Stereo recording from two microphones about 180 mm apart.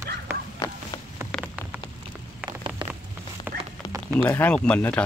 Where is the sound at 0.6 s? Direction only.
20° left (ahead or behind).